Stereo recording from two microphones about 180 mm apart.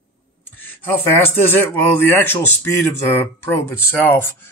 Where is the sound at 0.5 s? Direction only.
10° left (ahead or behind).